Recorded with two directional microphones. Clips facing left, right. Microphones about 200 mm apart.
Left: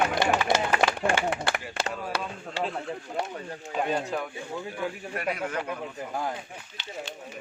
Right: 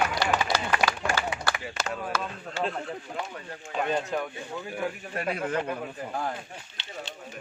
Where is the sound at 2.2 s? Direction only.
5° left (ahead or behind).